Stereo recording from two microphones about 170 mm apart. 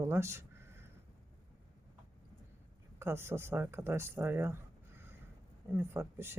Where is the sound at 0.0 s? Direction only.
15° right (ahead or behind).